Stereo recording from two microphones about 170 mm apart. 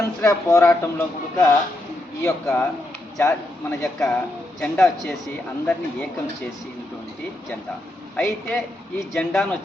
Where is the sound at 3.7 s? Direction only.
5° left (ahead or behind).